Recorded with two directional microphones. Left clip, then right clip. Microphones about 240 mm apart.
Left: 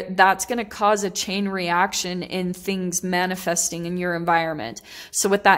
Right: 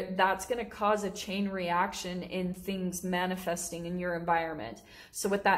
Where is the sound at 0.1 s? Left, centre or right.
Left.